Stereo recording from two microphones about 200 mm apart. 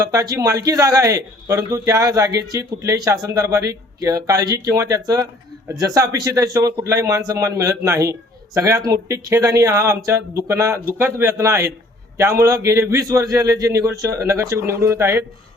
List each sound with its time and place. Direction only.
0.0 s speech: 20° right (ahead or behind)